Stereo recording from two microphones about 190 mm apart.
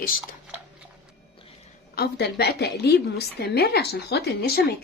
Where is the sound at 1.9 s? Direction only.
60° left (ahead or behind).